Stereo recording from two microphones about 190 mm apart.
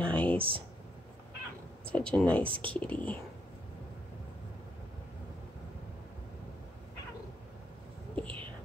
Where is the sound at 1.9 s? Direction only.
5° left (ahead or behind).